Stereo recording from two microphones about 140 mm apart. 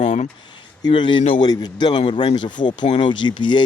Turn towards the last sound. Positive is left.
turn(degrees=35)  # may be behind; listen again after turning